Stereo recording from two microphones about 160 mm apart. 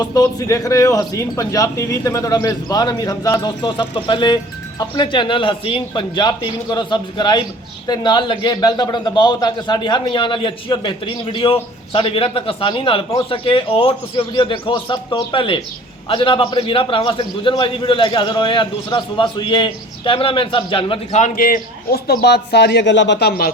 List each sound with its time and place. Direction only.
0.0 s a man's voice: 25° left (ahead or behind)
21.2 s a man's voice: 55° left (ahead or behind); by 23.5 s 85° left